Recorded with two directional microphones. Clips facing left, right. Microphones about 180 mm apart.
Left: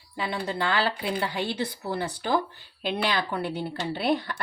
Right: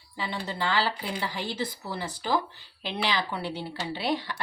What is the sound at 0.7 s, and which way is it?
Speech, 60° left (ahead or behind).